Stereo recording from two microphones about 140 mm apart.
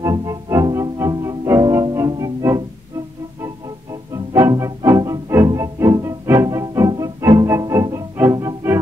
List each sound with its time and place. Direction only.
0.0 s music: 25° right (ahead or behind)